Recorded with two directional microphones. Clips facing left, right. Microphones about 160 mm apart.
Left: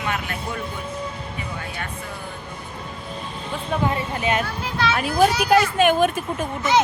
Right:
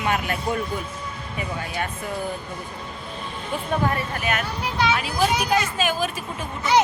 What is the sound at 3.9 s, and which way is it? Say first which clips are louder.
Speech: left 2 dB; 20° left (ahead or behind).